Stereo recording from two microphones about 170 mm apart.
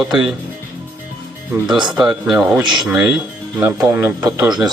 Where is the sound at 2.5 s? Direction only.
25° right (ahead or behind).